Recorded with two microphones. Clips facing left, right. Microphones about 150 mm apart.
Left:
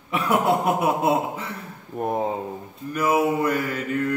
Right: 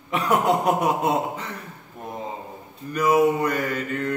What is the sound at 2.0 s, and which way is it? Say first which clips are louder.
Speech: left 9 dB; 55° left (ahead or behind).